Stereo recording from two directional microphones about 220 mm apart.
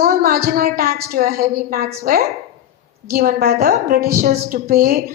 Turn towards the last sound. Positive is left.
turn(degrees=-40)  # may be behind; listen again after turning